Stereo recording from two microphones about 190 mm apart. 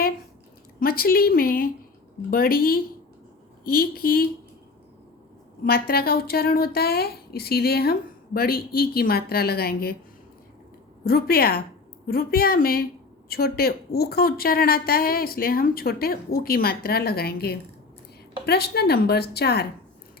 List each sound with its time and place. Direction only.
0.8 s speech: 50° left (ahead or behind)
5.6 s a woman's voice: 55° left (ahead or behind)
11.0 s a woman's voice: 50° left (ahead or behind)